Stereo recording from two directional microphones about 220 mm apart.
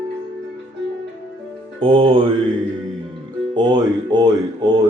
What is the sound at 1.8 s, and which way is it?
Speech, 25° right (ahead or behind).